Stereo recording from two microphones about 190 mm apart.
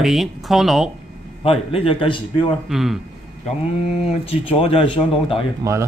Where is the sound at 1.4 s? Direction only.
30° left (ahead or behind).